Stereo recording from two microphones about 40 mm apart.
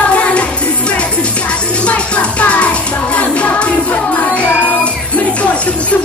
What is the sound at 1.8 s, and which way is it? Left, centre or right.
Music, left.